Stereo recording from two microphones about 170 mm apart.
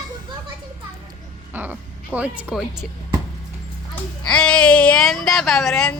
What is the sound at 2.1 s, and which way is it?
Speech, 10° right (ahead or behind).